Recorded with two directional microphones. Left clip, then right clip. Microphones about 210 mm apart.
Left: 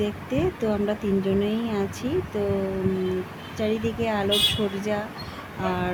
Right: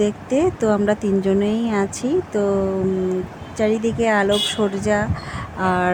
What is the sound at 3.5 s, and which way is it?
Speech, 25° right (ahead or behind).